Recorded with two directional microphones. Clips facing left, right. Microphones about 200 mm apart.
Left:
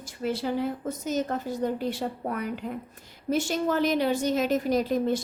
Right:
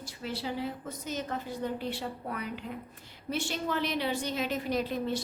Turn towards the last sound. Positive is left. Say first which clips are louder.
# left 6 dB
turn(degrees=45)  # may be behind; listen again after turning